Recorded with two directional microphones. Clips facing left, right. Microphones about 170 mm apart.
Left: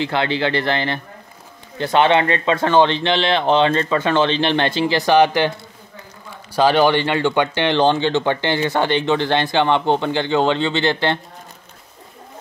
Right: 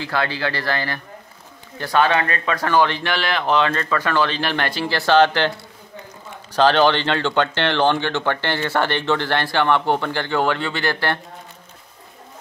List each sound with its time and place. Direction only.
0.0 s speech: 20° left (ahead or behind)
6.5 s speech: 10° left (ahead or behind)